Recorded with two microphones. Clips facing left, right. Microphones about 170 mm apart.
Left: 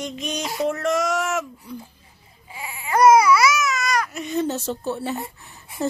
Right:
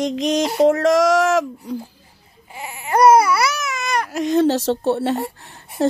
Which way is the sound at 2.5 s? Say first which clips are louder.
Right 3 dB; 55° right (ahead or behind).